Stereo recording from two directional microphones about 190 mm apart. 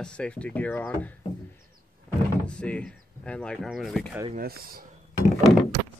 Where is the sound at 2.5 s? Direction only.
5° left (ahead or behind).